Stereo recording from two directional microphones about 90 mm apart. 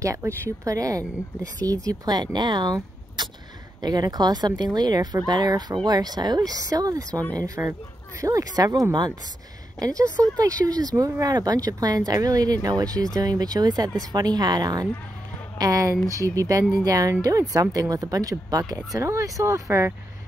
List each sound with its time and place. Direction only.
0.0 s a woman's voice: 35° right (ahead or behind)
7.1 s speech: 15° left (ahead or behind)
7.3 s a woman's voice: 45° right (ahead or behind)